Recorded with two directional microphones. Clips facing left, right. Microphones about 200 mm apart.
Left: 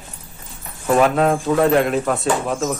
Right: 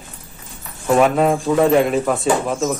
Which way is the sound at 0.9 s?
Centre (ahead or behind).